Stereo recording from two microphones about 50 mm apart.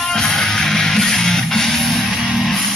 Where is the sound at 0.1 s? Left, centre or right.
Centre.